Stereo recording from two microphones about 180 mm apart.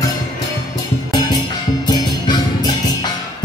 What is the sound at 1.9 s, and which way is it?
Music, 25° left (ahead or behind).